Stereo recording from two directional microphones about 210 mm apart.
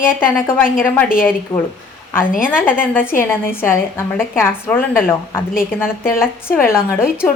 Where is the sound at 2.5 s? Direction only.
10° left (ahead or behind).